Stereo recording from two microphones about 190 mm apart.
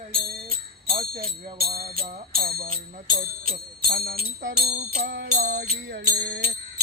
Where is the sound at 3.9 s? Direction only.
55° right (ahead or behind).